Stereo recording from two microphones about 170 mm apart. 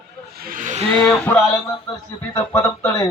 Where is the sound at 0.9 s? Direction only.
10° left (ahead or behind).